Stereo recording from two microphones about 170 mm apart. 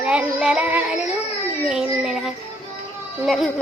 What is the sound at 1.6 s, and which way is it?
Speech, 5° right (ahead or behind).